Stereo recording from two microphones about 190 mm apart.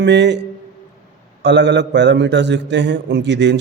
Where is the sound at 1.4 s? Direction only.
65° right (ahead or behind).